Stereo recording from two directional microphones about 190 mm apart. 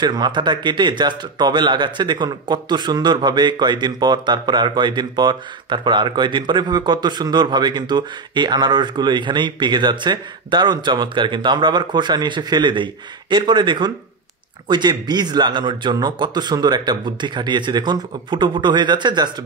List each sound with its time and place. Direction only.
0.0 s speech: 25° right (ahead or behind)